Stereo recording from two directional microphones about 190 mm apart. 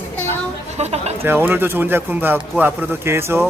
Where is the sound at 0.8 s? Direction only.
35° right (ahead or behind).